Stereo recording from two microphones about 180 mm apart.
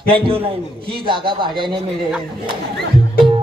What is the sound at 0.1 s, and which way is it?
Speech, 30° right (ahead or behind).